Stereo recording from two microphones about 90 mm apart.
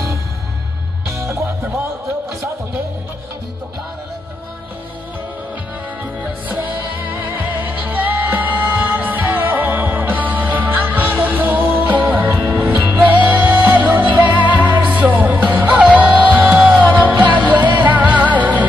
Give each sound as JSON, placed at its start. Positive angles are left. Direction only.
{"t": 1.1, "sound": "music", "side_deg": -35}
{"t": 7.1, "sound": "music", "side_deg": -20}